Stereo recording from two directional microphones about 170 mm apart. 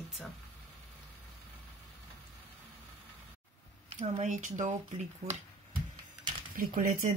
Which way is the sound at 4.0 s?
45° right (ahead or behind).